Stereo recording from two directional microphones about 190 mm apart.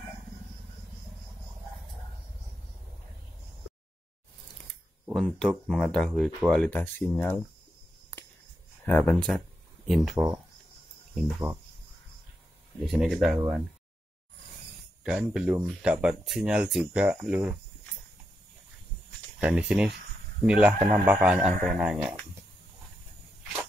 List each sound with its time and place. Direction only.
5.0 s speech: 5° left (ahead or behind)
8.1 s a sound: 10° left (ahead or behind)
8.8 s speech: 10° left (ahead or behind)
10.1 s speech: 15° right (ahead or behind)
12.8 s speech: centre (ahead or behind)
15.0 s speech: 5° right (ahead or behind)
19.4 s speech: 5° right (ahead or behind)